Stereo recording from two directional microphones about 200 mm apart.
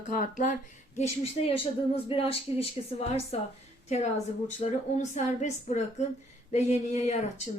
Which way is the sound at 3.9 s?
35° left (ahead or behind).